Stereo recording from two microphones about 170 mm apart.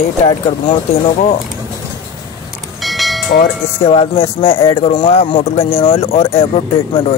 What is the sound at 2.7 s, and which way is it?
Church bell, centre (ahead or behind).